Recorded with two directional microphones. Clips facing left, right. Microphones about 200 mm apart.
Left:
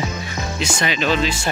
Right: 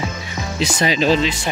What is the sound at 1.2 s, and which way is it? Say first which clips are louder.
Speech: even; 20° right (ahead or behind).